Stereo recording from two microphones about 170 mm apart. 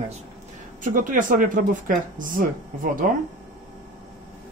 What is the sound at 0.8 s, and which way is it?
Speech, 50° right (ahead or behind).